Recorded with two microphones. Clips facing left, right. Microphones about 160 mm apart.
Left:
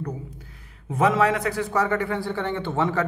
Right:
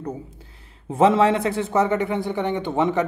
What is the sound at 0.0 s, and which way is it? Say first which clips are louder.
A man's voice: right 2 dB; 25° right (ahead or behind).